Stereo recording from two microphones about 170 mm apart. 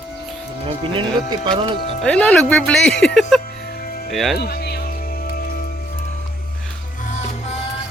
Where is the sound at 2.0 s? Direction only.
5° left (ahead or behind).